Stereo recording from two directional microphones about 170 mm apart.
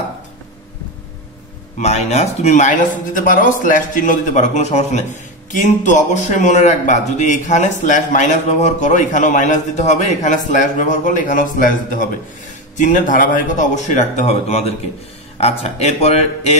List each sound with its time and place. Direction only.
1.8 s speech: 40° left (ahead or behind)